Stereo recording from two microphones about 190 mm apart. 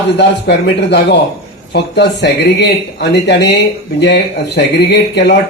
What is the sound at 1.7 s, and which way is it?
Speech, 60° left (ahead or behind).